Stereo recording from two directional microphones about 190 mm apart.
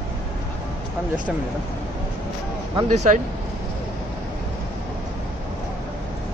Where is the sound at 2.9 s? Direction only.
35° right (ahead or behind).